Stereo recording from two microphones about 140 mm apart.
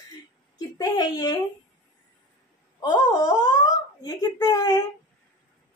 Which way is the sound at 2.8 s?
30° left (ahead or behind).